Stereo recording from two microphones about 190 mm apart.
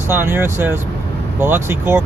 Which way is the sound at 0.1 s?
10° right (ahead or behind).